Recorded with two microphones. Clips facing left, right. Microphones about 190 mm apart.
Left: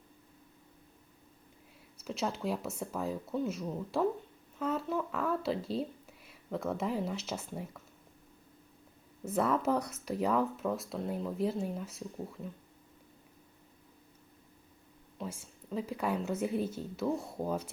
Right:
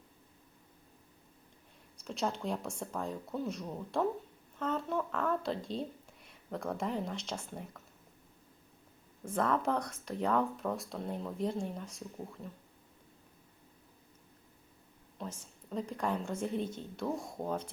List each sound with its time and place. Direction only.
2.0 s speech: 5° left (ahead or behind)
9.2 s speech: 10° left (ahead or behind)
15.2 s a woman's voice: 5° left (ahead or behind)